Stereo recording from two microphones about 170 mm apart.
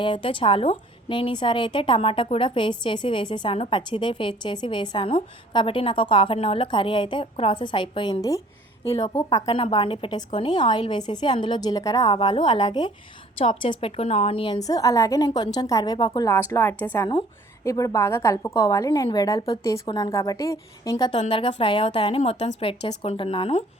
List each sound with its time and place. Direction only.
0.0 s a woman's voice: 30° left (ahead or behind)
9.5 s a woman's voice: 30° left (ahead or behind)
21.1 s a woman's voice: 40° left (ahead or behind)